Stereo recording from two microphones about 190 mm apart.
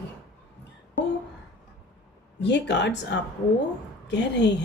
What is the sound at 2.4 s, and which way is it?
A woman's voice, 65° left (ahead or behind).